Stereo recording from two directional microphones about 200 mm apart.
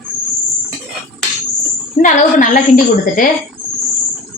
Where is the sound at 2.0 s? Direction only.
40° left (ahead or behind).